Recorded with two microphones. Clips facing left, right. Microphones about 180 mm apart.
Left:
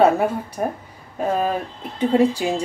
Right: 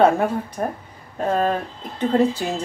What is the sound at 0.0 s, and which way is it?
Speech, 5° left (ahead or behind).